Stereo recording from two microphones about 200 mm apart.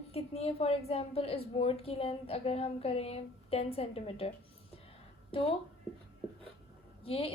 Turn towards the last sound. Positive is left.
turn(degrees=30)  # may be behind; listen again after turning